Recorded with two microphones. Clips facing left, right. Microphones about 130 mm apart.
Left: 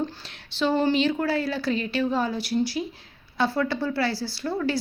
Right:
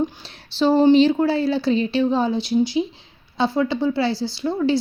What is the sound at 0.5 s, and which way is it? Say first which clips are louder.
Speech: right 8 dB; 35° right (ahead or behind).